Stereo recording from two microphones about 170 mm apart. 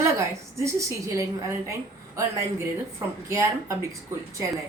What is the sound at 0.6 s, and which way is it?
A woman's voice, 20° right (ahead or behind).